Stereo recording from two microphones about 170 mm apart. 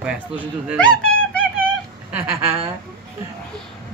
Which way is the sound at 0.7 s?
5° left (ahead or behind).